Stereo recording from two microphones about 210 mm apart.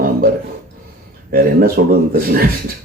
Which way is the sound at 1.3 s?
45° right (ahead or behind).